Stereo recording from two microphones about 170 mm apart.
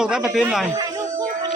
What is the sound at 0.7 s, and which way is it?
Music, 20° right (ahead or behind).